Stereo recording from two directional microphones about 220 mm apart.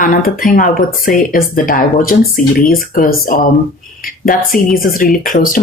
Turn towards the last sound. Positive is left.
turn(degrees=40)  # may be behind; listen again after turning